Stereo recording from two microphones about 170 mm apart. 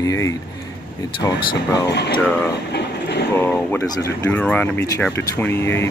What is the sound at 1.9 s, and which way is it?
Speech, 80° left.